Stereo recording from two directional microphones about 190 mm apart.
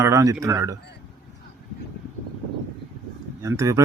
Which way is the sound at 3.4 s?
15° right (ahead or behind).